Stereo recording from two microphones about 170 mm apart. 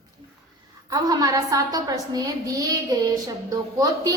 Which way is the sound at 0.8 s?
20° right (ahead or behind).